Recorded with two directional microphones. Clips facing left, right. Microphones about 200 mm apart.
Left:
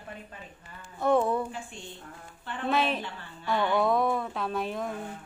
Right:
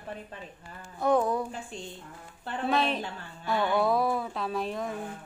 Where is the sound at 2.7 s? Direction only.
Centre (ahead or behind).